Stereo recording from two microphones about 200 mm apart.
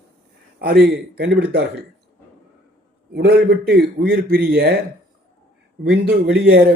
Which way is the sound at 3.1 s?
50° right (ahead or behind).